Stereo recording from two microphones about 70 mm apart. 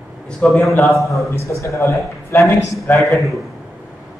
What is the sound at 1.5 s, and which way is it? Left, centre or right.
A man's voice, left.